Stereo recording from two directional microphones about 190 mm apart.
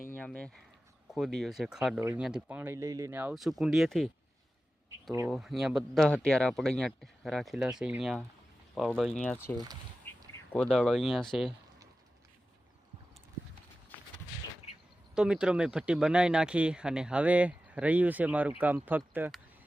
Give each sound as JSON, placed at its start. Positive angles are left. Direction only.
{"t": 0.1, "sound": "speech", "side_deg": 5}
{"t": 5.3, "sound": "speech", "side_deg": 0}
{"t": 10.0, "sound": "a sound", "side_deg": 10}
{"t": 10.5, "sound": "speech", "side_deg": 5}
{"t": 14.7, "sound": "a sound", "side_deg": 30}
{"t": 15.1, "sound": "speech", "side_deg": -5}